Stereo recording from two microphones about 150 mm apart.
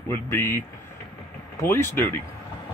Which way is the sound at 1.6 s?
15° left (ahead or behind).